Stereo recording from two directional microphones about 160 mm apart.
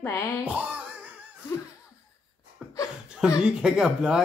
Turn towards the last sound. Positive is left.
turn(degrees=-5)  # may be behind; listen again after turning